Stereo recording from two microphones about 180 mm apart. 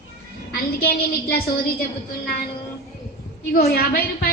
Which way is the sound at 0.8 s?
55° left (ahead or behind).